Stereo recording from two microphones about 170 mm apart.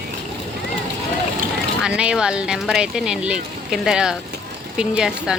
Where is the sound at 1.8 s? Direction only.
5° right (ahead or behind).